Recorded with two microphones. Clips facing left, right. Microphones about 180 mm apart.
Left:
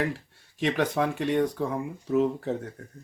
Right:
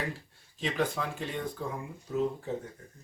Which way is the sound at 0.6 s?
70° left (ahead or behind).